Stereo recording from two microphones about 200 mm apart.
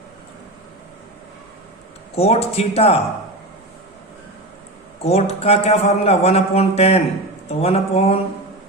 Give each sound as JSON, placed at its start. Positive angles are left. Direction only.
{"t": 2.1, "sound": "a man's voice", "side_deg": 30}
{"t": 5.0, "sound": "a man's voice", "side_deg": 30}